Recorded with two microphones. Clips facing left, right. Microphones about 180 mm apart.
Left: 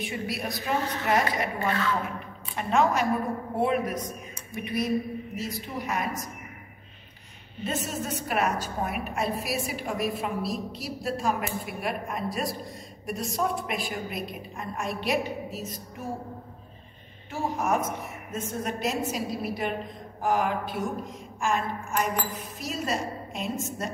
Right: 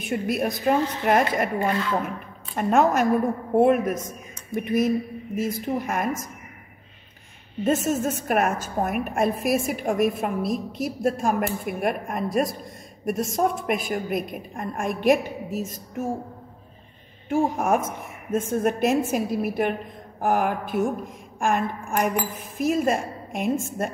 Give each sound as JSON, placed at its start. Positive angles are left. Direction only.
{"t": 0.0, "sound": "a woman's voice", "side_deg": -50}
{"t": 2.5, "sound": "a woman's voice", "side_deg": -50}
{"t": 7.6, "sound": "a woman's voice", "side_deg": -45}
{"t": 17.3, "sound": "a woman's voice", "side_deg": -50}